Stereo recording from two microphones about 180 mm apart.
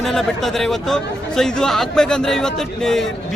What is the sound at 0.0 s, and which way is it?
A man's voice, centre (ahead or behind).